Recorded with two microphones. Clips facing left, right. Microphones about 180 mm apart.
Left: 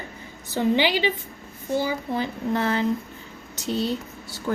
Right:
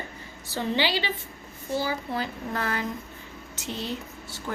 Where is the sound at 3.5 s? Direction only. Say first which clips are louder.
Left 7 dB; 35° left (ahead or behind).